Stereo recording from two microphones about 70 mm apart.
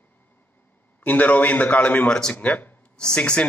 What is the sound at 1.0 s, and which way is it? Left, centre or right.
A man's voice, left.